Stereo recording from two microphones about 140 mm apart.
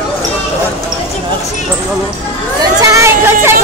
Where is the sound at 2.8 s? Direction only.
20° right (ahead or behind).